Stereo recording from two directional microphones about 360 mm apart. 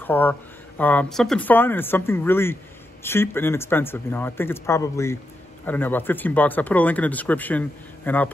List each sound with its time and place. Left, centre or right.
0.0 s speech: centre